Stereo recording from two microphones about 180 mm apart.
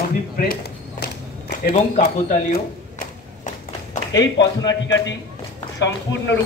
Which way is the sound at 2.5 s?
50° left (ahead or behind).